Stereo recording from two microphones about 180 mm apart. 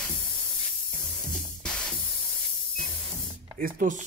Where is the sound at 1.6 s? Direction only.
5° left (ahead or behind).